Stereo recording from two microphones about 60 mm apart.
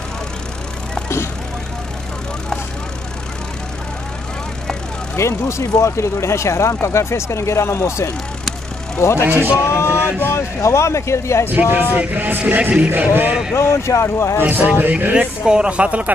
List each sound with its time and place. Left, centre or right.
1.0 s vehicle: left
5.1 s speech: left
9.7 s a sound: left
10.2 s speech: left
11.5 s speech: right
13.6 s speech: left
14.4 s speech: right
15.4 s speech: centre